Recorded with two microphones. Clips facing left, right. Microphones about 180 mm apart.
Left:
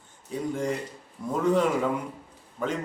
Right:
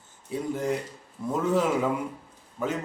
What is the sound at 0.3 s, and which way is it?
A man's voice, 5° right (ahead or behind).